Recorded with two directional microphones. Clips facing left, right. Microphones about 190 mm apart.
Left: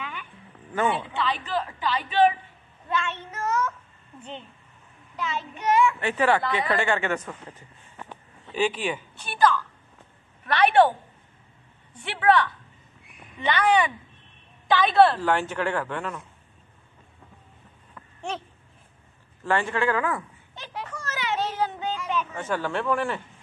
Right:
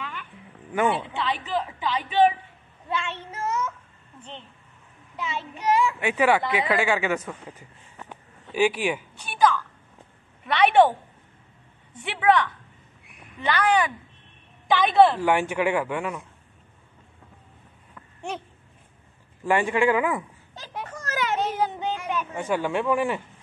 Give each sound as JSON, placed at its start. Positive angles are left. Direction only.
{"t": 0.0, "sound": "music", "side_deg": 5}
{"t": 0.7, "sound": "speech", "side_deg": -5}
{"t": 1.0, "sound": "speech", "side_deg": -20}
{"t": 4.2, "sound": "a woman's voice", "side_deg": 5}
{"t": 5.1, "sound": "speech", "side_deg": -25}
{"t": 5.9, "sound": "a woman's voice", "side_deg": -10}
{"t": 12.0, "sound": "speech", "side_deg": -15}
{"t": 19.4, "sound": "speech", "side_deg": -15}
{"t": 20.9, "sound": "children playing", "side_deg": -45}
{"t": 21.4, "sound": "a sound", "side_deg": -15}
{"t": 22.1, "sound": "speech", "side_deg": -10}